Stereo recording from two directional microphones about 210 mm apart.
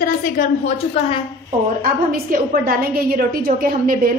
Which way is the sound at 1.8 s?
45° right (ahead or behind).